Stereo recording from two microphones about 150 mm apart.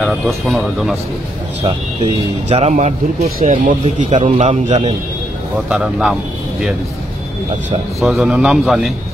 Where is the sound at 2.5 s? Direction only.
50° right (ahead or behind).